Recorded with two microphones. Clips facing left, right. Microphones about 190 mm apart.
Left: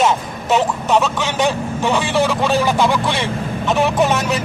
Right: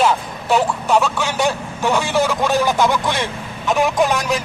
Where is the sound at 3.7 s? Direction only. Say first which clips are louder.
Even; centre (ahead or behind).